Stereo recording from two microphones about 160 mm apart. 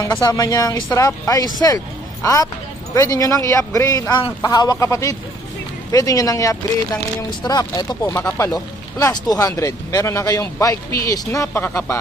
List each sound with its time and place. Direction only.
0.0 s speech: 20° left (ahead or behind)